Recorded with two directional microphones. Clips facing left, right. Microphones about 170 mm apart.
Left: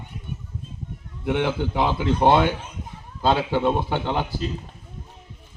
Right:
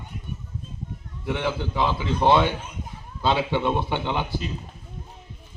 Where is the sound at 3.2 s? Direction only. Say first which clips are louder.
Left 2 dB; 40° left (ahead or behind).